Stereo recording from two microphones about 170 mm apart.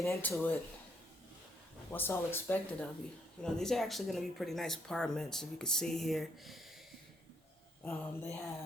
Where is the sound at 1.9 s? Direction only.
10° left (ahead or behind).